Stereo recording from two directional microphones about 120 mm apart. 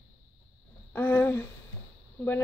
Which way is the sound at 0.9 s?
15° left (ahead or behind).